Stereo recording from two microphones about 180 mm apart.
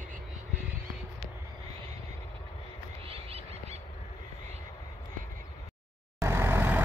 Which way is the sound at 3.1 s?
35° right (ahead or behind).